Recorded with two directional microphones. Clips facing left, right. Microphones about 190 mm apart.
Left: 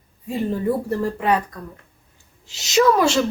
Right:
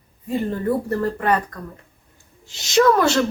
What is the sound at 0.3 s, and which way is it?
A woman's voice, 5° left (ahead or behind).